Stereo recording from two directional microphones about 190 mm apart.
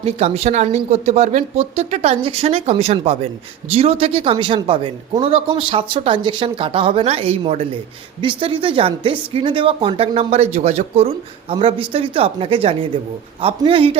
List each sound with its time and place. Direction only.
0.0 s speech: 35° right (ahead or behind)